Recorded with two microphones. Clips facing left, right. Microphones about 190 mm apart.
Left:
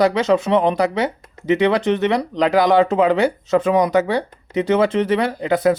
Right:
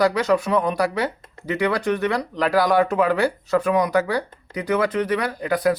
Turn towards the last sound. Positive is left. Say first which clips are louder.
# left 4 dB
turn(degrees=25)  # may be behind; listen again after turning